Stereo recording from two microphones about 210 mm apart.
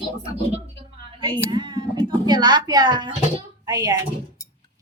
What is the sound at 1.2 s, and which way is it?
A woman's voice, 20° right (ahead or behind).